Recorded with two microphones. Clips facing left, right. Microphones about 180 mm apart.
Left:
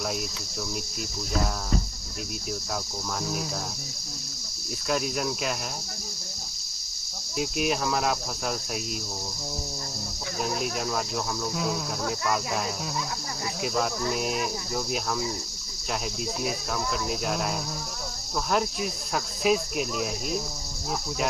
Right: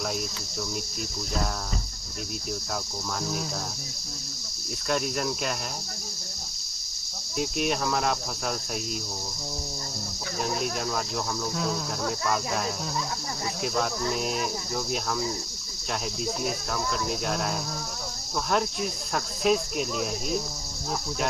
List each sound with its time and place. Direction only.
1.3 s speech: centre (ahead or behind)
3.2 s speech: centre (ahead or behind)
4.8 s speech: centre (ahead or behind)
7.3 s speech: centre (ahead or behind)
10.4 s speech: centre (ahead or behind)
16.4 s speech: centre (ahead or behind)